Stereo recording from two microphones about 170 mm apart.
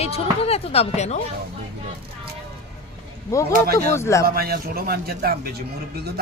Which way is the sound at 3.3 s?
20° left (ahead or behind).